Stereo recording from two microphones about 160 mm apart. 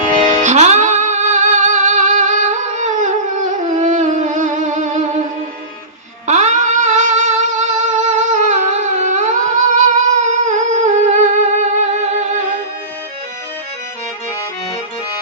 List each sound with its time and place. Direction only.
0.4 s music: 45° right (ahead or behind)
6.2 s music: 45° right (ahead or behind)